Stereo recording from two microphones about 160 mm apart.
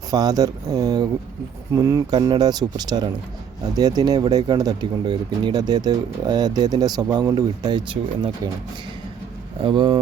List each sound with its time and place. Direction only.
0.1 s speech: 25° right (ahead or behind)
9.6 s speech: 30° right (ahead or behind)